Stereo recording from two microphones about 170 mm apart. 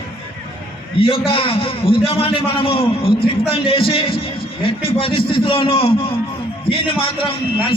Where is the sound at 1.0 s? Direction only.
35° left (ahead or behind).